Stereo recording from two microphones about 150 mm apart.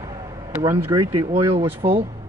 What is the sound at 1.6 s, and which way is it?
Speech, 15° right (ahead or behind).